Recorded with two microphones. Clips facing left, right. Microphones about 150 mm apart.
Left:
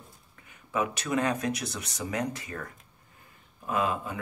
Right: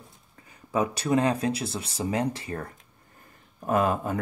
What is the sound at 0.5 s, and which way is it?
Speech, 35° right (ahead or behind).